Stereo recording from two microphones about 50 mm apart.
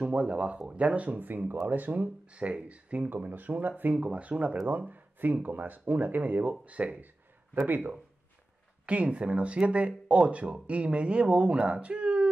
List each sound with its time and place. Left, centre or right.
0.0 s speech: right
2.2 s speech: right
8.8 s speech: right